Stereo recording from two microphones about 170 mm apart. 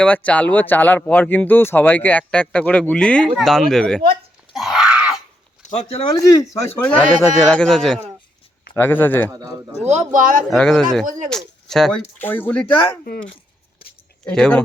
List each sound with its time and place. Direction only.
0.0 s speech: 10° left (ahead or behind)
4.5 s groan: centre (ahead or behind)
5.6 s speech: 40° left (ahead or behind)
6.1 s speech: 20° left (ahead or behind)
6.8 s a man's voice: 10° left (ahead or behind)
9.3 s speech: 20° right (ahead or behind)
9.8 s speech: 40° right (ahead or behind)
10.5 s a man's voice: 5° left (ahead or behind)
14.3 s a man's voice: 5° left (ahead or behind)